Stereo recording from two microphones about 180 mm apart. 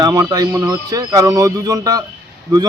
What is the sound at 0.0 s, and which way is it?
A man's voice, 20° right (ahead or behind).